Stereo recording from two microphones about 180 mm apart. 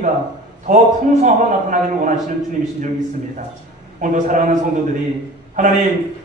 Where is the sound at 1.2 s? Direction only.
45° right (ahead or behind).